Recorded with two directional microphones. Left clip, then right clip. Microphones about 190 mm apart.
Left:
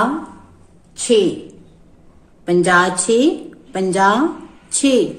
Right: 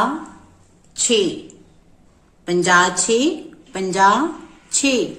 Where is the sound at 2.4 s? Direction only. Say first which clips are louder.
Left 1 dB; 10° right (ahead or behind).